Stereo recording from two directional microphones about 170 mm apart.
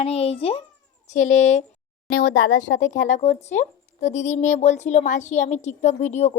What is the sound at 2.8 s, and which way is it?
Speech, 45° left (ahead or behind).